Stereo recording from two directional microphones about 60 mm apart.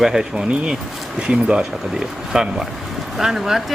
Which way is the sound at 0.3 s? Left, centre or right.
Centre.